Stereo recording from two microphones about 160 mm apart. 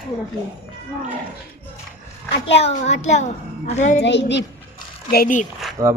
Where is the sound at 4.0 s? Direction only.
90° left.